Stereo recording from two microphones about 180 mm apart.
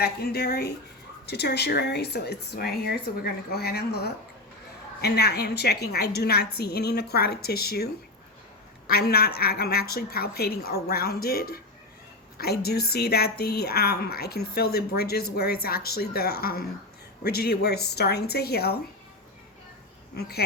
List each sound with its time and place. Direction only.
0.0 s a woman's voice: 60° left (ahead or behind)
8.9 s a woman's voice: 60° left (ahead or behind)
20.1 s a woman's voice: 60° left (ahead or behind)